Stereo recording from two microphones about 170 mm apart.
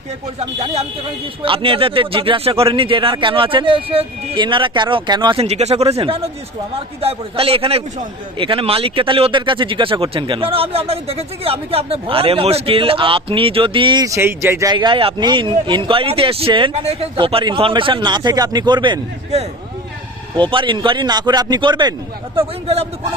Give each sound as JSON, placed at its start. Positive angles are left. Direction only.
{"t": 0.3, "sound": "speech", "side_deg": -40}
{"t": 5.5, "sound": "speech", "side_deg": -40}